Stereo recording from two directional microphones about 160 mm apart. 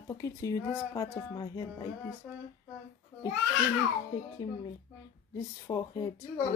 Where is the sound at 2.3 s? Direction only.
Centre (ahead or behind).